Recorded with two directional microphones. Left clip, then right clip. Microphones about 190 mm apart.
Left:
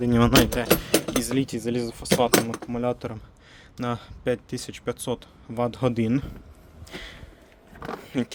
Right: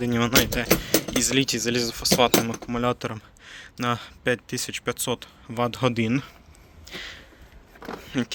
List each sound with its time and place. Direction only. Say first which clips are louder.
0.0 s speech: left 2 dB; 20° left (ahead or behind)
1.2 s speech: right 4 dB; centre (ahead or behind)
6.8 s a sound: right 3 dB; 10° left (ahead or behind)
8.0 s speech: right 1 dB; 10° left (ahead or behind)